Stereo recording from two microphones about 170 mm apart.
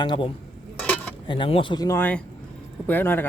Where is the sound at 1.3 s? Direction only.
30° left (ahead or behind).